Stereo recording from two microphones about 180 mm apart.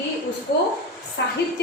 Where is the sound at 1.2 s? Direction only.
75° left (ahead or behind).